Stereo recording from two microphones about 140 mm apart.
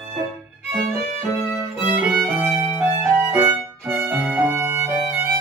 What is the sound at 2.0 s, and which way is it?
Violin, 10° right (ahead or behind).